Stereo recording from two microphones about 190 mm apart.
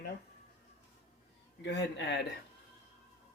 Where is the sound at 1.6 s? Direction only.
65° left (ahead or behind).